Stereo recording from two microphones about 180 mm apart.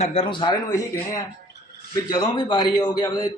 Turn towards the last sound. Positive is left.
turn(degrees=20)  # may be behind; listen again after turning